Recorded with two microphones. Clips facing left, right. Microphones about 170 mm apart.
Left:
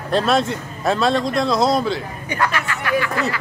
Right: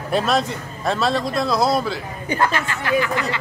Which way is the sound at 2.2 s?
30° right (ahead or behind).